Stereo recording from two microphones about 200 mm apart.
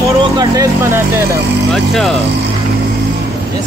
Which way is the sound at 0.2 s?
20° right (ahead or behind).